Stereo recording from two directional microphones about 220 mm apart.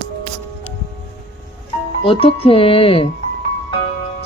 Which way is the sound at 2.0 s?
25° left (ahead or behind).